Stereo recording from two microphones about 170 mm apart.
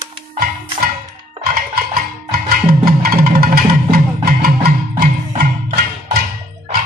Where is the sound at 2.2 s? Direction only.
60° right (ahead or behind).